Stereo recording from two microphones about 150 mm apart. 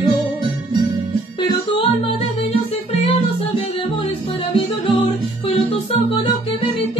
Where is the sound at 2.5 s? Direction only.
40° left (ahead or behind).